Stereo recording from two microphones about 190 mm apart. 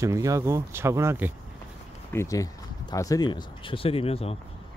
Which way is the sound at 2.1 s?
15° left (ahead or behind).